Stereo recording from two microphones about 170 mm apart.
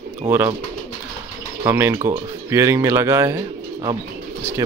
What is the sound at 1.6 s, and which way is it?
Speech, 15° right (ahead or behind).